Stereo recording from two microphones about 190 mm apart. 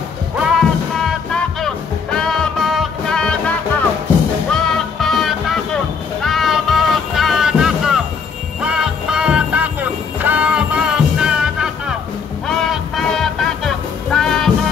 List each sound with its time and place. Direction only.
0.4 s music: centre (ahead or behind)